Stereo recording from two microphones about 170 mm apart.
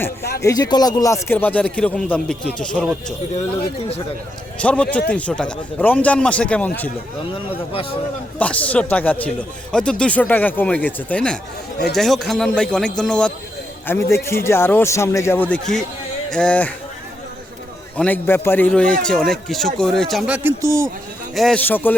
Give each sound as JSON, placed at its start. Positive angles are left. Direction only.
{"t": 0.2, "sound": "speech", "side_deg": 70}
{"t": 0.4, "sound": "speech", "side_deg": 20}
{"t": 4.6, "sound": "speech", "side_deg": 5}
{"t": 7.5, "sound": "a man's voice", "side_deg": 35}
{"t": 8.4, "sound": "speech", "side_deg": 10}
{"t": 17.9, "sound": "a man's voice", "side_deg": 10}
{"t": 21.3, "sound": "speech", "side_deg": 5}